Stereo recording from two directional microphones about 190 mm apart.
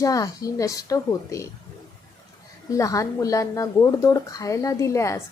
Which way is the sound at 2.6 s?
15° left (ahead or behind).